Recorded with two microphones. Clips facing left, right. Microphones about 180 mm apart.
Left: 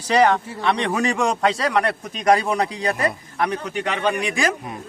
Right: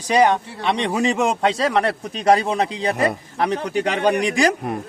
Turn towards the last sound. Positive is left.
turn(degrees=-40)  # may be behind; listen again after turning